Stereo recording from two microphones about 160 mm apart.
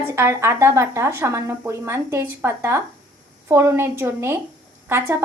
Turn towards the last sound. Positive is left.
turn(degrees=-15)  # may be behind; listen again after turning